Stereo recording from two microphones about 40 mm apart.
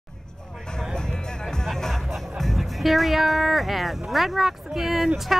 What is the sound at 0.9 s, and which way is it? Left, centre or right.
Music, centre.